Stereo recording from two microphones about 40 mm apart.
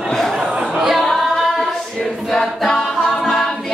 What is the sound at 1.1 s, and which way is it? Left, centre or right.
Singing, centre.